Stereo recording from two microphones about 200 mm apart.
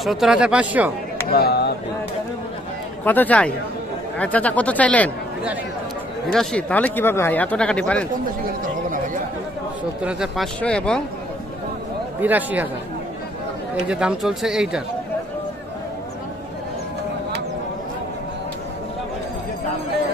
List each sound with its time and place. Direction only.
0.0 s speech: centre (ahead or behind)
1.3 s speech: 50° left (ahead or behind)
3.0 s speech: 10° left (ahead or behind)
6.3 s speech: 5° left (ahead or behind)
10.0 s speech: centre (ahead or behind)
12.2 s speech: 10° right (ahead or behind)
13.8 s speech: 5° right (ahead or behind)